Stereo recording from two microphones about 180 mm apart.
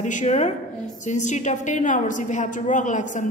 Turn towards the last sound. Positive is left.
turn(degrees=45)  # may be behind; listen again after turning